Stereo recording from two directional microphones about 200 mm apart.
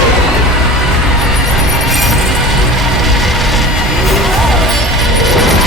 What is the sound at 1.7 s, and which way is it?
Music, centre (ahead or behind).